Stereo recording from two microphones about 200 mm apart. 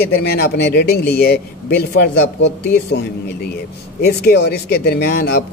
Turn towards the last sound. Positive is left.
turn(degrees=50)  # may be behind; listen again after turning